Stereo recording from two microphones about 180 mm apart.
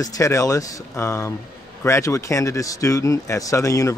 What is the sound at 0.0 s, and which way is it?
A man's voice, 20° left (ahead or behind).